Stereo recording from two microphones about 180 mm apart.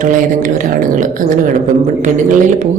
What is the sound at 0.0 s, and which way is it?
Speech, 45° right (ahead or behind).